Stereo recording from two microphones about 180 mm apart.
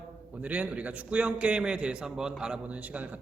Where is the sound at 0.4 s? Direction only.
10° right (ahead or behind).